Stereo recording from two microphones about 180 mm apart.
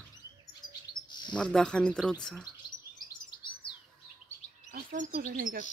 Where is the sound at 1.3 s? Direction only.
5° left (ahead or behind).